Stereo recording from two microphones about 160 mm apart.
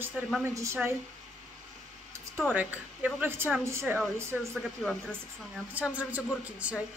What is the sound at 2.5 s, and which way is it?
Speech, 10° right (ahead or behind).